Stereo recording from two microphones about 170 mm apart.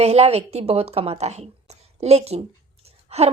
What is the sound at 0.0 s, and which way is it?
A woman's voice, 35° right (ahead or behind).